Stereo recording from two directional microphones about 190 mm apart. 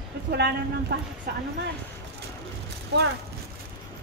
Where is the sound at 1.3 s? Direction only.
55° right (ahead or behind).